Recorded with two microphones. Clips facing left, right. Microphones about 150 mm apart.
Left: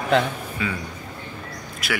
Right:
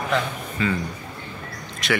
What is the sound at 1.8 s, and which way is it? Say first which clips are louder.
Speech: right 4 dB; 5° left (ahead or behind).